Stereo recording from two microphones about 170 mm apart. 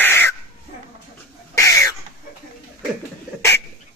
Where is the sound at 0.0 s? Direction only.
10° left (ahead or behind).